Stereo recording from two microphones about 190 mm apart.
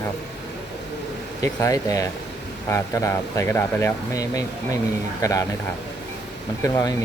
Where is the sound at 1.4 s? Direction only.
15° left (ahead or behind).